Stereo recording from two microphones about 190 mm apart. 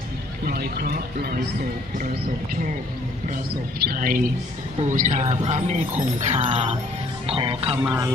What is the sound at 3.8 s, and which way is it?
A woman's voice, 50° right (ahead or behind).